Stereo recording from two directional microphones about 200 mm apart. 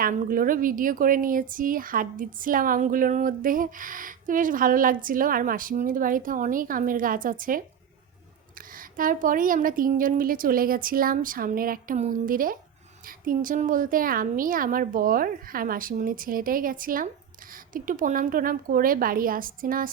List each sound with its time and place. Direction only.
0.0 s a woman's voice: 45° right (ahead or behind)